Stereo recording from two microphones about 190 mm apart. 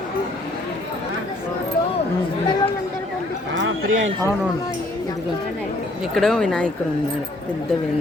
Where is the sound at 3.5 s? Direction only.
80° right.